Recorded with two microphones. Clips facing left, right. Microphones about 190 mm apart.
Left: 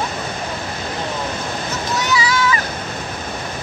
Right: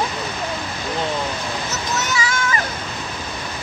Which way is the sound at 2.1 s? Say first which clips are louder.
Left 5 dB; 45° right (ahead or behind).